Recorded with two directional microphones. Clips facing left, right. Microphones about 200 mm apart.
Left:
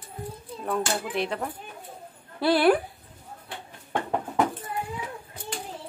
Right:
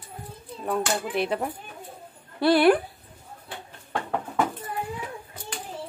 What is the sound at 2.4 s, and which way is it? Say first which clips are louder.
Speech: right 2 dB; centre (ahead or behind).